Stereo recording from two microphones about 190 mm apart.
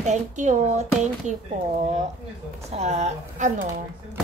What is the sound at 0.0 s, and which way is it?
A child's voice, 40° right (ahead or behind).